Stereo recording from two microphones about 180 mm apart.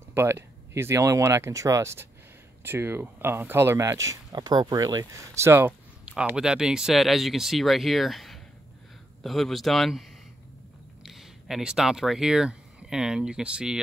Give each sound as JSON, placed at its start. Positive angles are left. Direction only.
{"t": 0.1, "sound": "a man's voice", "side_deg": -15}